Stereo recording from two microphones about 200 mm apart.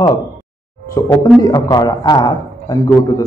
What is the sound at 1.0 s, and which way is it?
A man's voice, 20° left (ahead or behind).